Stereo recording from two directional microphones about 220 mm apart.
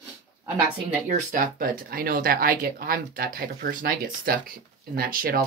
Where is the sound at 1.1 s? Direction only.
40° right (ahead or behind).